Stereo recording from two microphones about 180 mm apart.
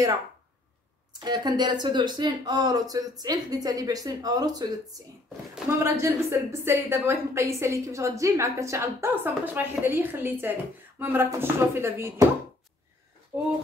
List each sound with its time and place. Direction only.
1.2 s speech: 25° right (ahead or behind)
5.8 s a woman's voice: 15° right (ahead or behind)